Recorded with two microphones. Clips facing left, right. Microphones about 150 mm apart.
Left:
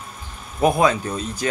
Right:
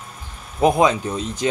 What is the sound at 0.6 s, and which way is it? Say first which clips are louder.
Speech: right 1 dB; 20° right (ahead or behind).